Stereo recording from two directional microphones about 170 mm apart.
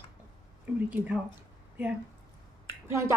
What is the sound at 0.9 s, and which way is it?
Speech, 10° right (ahead or behind).